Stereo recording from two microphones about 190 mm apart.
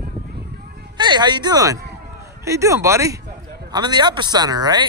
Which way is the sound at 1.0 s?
25° right (ahead or behind).